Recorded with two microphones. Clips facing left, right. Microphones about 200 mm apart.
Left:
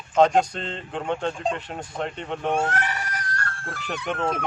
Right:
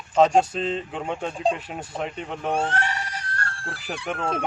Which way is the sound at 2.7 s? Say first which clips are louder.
Even; 30° right (ahead or behind).